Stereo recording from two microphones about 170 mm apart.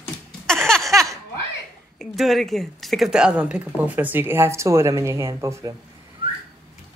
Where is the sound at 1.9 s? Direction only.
Centre (ahead or behind); by 5.7 s 15° right (ahead or behind).